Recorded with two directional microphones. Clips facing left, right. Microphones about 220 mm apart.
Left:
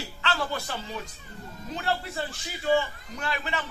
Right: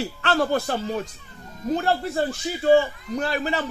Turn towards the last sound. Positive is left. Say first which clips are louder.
# right 8 dB
turn(degrees=-40)  # may be behind; listen again after turning